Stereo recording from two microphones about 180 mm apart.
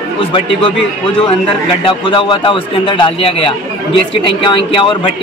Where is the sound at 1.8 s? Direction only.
30° left (ahead or behind).